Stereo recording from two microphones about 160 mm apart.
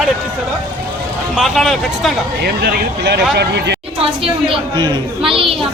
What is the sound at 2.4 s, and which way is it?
Speech, 80° right.